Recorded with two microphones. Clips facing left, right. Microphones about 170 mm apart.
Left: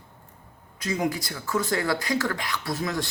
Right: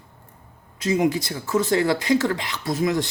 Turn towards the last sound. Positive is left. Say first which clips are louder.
# right 6 dB
turn(degrees=-20)  # may be behind; listen again after turning